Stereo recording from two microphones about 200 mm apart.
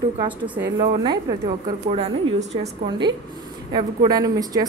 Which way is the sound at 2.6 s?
20° right (ahead or behind).